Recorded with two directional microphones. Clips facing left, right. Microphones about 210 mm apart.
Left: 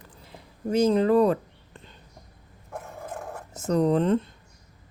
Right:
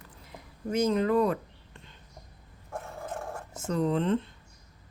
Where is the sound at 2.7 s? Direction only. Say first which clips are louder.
Even; 5° left (ahead or behind).